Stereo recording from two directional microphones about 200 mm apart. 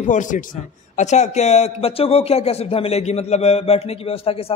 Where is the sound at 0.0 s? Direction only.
40° left (ahead or behind).